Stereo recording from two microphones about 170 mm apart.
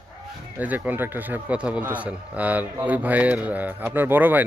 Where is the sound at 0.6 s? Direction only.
10° right (ahead or behind).